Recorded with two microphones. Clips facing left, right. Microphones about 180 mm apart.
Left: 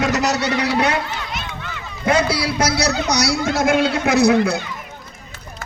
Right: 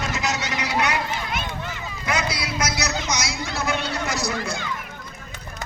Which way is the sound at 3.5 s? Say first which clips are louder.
Left 9 dB; 90° left.